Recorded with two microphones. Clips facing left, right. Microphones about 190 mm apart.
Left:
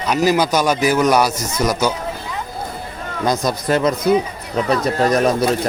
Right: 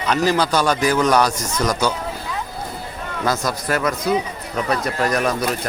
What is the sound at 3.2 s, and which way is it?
Speech, 20° left (ahead or behind).